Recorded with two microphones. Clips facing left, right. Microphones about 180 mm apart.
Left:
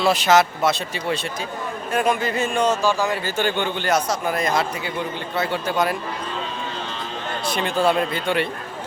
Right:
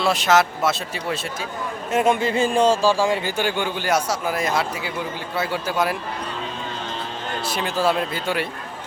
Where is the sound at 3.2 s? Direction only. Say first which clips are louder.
Left 1 dB; 10° right (ahead or behind).